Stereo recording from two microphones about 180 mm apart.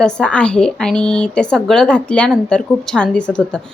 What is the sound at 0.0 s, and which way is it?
Speech, 5° left (ahead or behind).